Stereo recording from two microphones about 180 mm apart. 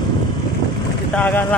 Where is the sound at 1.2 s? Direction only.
10° left (ahead or behind).